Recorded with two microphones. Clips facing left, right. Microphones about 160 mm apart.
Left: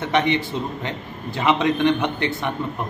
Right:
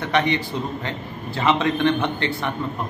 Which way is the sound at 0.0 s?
20° left (ahead or behind).